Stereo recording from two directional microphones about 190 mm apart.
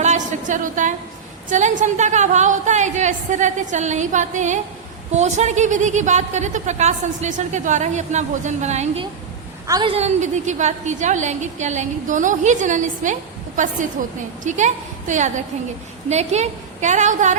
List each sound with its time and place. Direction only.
0.0 s a sound: 40° right (ahead or behind)
1.5 s a woman's voice: 40° right (ahead or behind)
9.6 s a woman's voice: 20° right (ahead or behind)
9.9 s a woman's voice: 35° right (ahead or behind)